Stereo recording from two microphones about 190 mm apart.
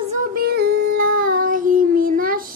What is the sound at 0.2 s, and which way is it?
Female singing, 50° right (ahead or behind).